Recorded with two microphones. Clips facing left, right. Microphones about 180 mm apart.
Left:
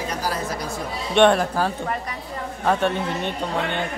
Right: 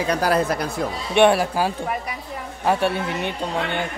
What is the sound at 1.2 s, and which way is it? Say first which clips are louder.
A woman's voice: even; 10° right (ahead or behind).